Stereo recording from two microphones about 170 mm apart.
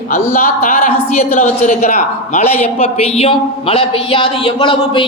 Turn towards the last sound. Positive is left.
turn(degrees=30)  # may be behind; listen again after turning